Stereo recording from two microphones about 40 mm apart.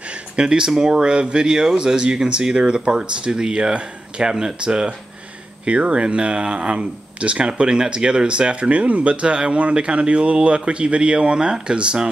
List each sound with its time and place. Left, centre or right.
0.1 s speech: right
5.7 s speech: right